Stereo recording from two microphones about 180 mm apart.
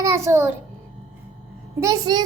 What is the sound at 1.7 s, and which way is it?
Speech, 20° right (ahead or behind).